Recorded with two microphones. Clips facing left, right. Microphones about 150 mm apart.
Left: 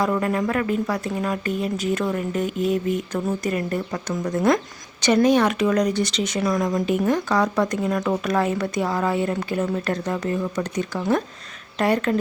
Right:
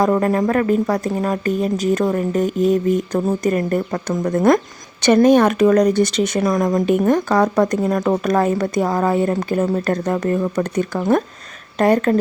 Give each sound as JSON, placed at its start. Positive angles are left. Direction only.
{"t": 0.0, "sound": "speech", "side_deg": -40}